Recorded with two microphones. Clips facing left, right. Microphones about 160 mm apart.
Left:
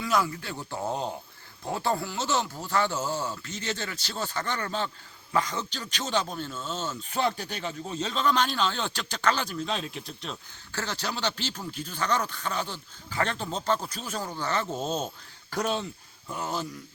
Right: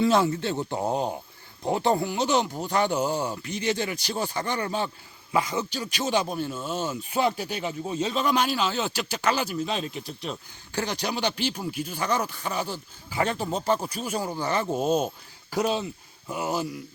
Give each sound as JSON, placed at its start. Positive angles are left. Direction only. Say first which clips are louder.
{"t": 0.0, "sound": "speech", "louder": "right 6 dB", "side_deg": -25}